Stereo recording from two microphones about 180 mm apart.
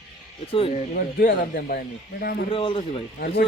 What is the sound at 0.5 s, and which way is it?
Speech, 30° left (ahead or behind).